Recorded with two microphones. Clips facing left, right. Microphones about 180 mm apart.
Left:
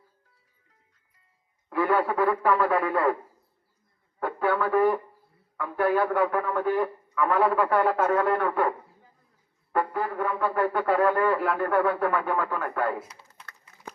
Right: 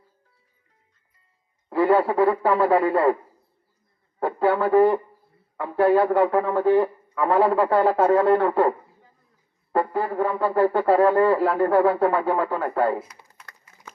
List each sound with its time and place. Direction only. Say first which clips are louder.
1.7 s speech: right 5 dB; 30° right (ahead or behind)
4.2 s speech: right 5 dB; 30° right (ahead or behind)
9.7 s speech: right 4 dB; 30° right (ahead or behind)